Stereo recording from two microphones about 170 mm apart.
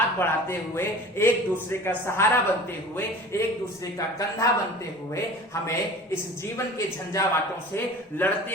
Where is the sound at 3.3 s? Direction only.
15° left (ahead or behind).